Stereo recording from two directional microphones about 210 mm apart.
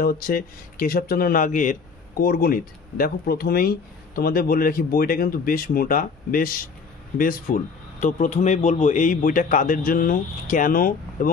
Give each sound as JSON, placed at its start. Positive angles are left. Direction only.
{"t": 0.0, "sound": "speech", "side_deg": 45}